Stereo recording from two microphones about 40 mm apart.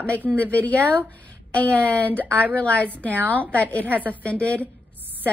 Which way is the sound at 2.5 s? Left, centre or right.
Left.